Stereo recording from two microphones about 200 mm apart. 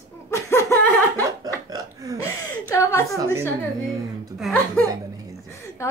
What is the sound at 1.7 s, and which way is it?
Hiccup, 15° right (ahead or behind).